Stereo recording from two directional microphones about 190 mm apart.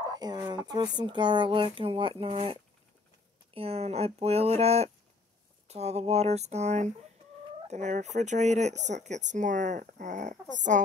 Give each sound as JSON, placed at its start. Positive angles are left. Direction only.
{"t": 0.1, "sound": "speech", "side_deg": -20}
{"t": 7.6, "sound": "fowl", "side_deg": -35}
{"t": 8.0, "sound": "speech", "side_deg": -40}